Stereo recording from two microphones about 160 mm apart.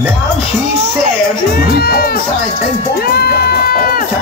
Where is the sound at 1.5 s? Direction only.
70° left (ahead or behind).